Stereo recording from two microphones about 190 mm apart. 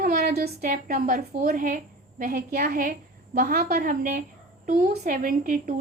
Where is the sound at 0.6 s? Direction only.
50° right (ahead or behind).